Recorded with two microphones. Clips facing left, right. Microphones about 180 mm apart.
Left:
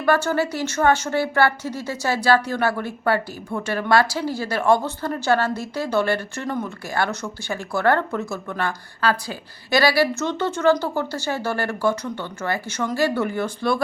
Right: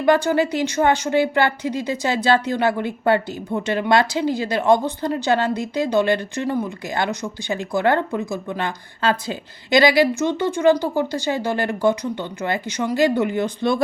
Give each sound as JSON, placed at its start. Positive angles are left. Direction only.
{"t": 0.0, "sound": "speech", "side_deg": -15}